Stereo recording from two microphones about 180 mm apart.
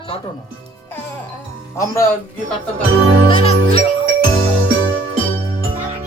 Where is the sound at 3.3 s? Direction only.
35° left (ahead or behind).